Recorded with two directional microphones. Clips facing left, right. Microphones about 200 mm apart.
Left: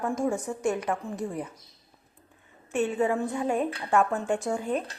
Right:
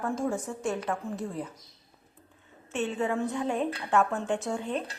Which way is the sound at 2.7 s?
10° left (ahead or behind).